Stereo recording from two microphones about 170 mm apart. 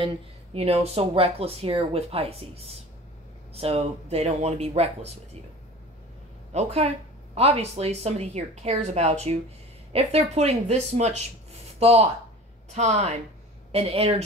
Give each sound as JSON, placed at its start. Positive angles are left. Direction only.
{"t": 0.0, "sound": "speech", "side_deg": -35}
{"t": 6.5, "sound": "speech", "side_deg": -40}